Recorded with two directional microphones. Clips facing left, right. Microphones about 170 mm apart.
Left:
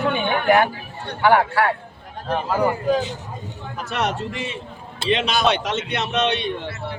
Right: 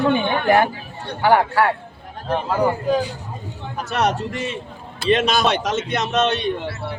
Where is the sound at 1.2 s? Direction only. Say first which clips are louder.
Right 1 dB; 40° right (ahead or behind).